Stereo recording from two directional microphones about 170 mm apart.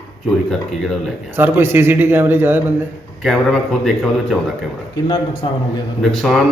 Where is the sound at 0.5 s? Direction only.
Centre (ahead or behind).